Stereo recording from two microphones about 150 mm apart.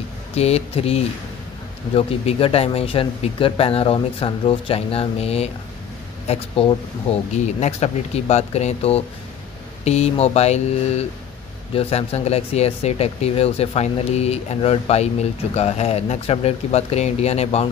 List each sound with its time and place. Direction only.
0.4 s speech: 45° left (ahead or behind)